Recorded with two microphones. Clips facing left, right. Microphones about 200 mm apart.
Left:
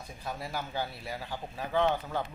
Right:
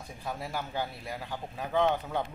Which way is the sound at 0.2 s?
Centre (ahead or behind).